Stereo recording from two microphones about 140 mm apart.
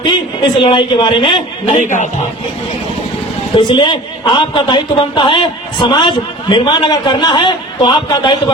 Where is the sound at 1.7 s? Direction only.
60° left (ahead or behind).